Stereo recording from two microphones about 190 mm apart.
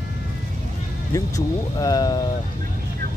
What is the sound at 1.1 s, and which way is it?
Speech, 20° left (ahead or behind).